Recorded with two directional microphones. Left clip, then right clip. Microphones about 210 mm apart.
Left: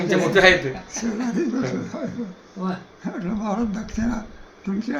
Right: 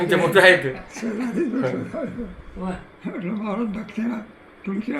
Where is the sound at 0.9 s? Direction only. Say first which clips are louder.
Left 2 dB; 20° left (ahead or behind).